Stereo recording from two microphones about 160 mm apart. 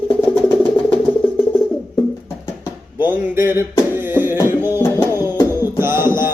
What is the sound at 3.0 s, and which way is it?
Speech, 15° right (ahead or behind).